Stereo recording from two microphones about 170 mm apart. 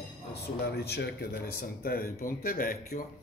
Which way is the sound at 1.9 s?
60° left (ahead or behind).